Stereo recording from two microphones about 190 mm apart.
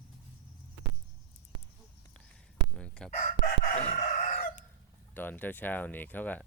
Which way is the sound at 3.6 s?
40° left (ahead or behind).